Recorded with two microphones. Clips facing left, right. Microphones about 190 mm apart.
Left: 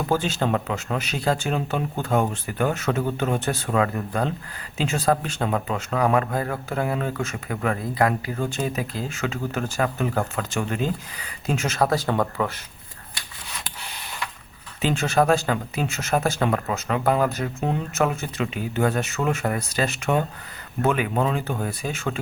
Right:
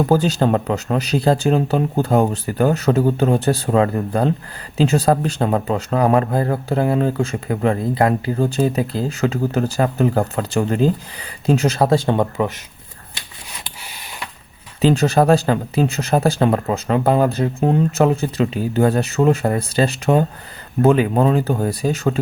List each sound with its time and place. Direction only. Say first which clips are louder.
0.0 s a man's voice: right 7 dB; 40° right (ahead or behind); by 12.5 s 20° right (ahead or behind)
14.8 s a man's voice: right 6 dB; 35° right (ahead or behind)